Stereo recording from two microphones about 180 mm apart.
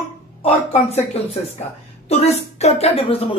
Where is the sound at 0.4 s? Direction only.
30° left (ahead or behind).